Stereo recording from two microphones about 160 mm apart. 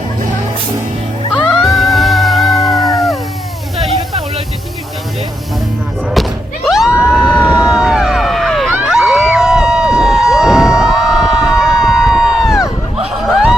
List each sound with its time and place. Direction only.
1.3 s cat: 5° right (ahead or behind)
6.7 s screaming: centre (ahead or behind)
7.3 s vehicle: 5° right (ahead or behind)
8.7 s crowd: 5° right (ahead or behind)